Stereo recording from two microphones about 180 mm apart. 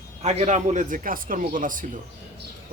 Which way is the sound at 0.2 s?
40° right (ahead or behind).